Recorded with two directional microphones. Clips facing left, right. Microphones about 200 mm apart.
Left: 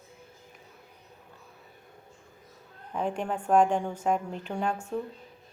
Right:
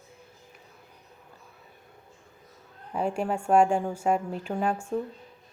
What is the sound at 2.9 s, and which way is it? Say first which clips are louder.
A woman's voice: right 2 dB; 10° right (ahead or behind).